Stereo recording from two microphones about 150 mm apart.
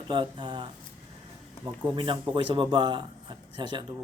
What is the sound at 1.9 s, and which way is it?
A man's voice, 30° right (ahead or behind).